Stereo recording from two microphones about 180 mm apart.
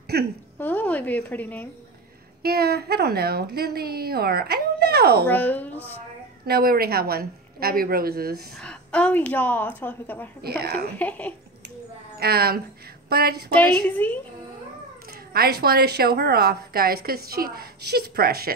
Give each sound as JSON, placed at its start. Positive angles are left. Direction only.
{"t": 0.1, "sound": "a woman's voice", "side_deg": -65}
{"t": 0.6, "sound": "a woman's voice", "side_deg": 10}
{"t": 2.4, "sound": "a woman's voice", "side_deg": -60}
{"t": 5.3, "sound": "a woman's voice", "side_deg": 10}
{"t": 6.4, "sound": "a woman's voice", "side_deg": -55}
{"t": 8.5, "sound": "a woman's voice", "side_deg": 5}
{"t": 10.4, "sound": "a woman's voice", "side_deg": -60}
{"t": 11.0, "sound": "a woman's voice", "side_deg": 10}
{"t": 12.2, "sound": "a woman's voice", "side_deg": -60}
{"t": 13.6, "sound": "a woman's voice", "side_deg": 10}
{"t": 15.3, "sound": "a woman's voice", "side_deg": -60}